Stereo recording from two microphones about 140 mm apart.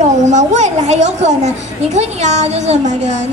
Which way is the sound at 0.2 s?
55° right (ahead or behind).